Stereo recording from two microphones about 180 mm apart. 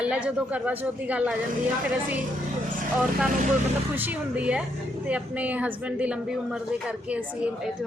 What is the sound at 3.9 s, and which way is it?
A woman's voice, 10° right (ahead or behind).